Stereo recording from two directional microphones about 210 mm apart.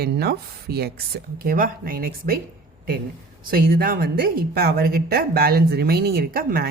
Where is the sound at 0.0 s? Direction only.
45° right (ahead or behind).